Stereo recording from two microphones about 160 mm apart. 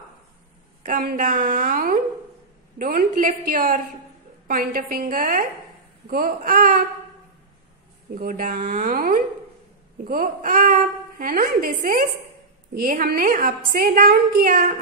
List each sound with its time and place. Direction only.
0.8 s a woman's voice: 60° right (ahead or behind)
8.1 s a woman's voice: 55° right (ahead or behind)